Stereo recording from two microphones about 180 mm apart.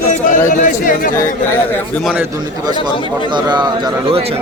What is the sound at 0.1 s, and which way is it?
Speech, 45° left (ahead or behind).